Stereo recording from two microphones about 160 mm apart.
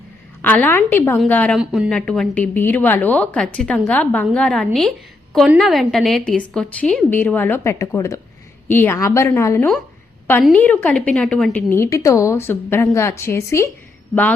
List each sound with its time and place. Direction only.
0.4 s a woman's voice: 10° left (ahead or behind)
1.5 s a woman's voice: centre (ahead or behind)
11.7 s a woman's voice: 15° left (ahead or behind)